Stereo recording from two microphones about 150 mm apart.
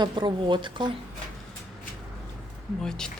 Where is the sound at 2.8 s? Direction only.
5° left (ahead or behind).